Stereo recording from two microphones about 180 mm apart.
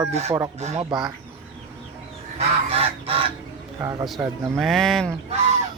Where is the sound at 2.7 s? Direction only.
35° right (ahead or behind).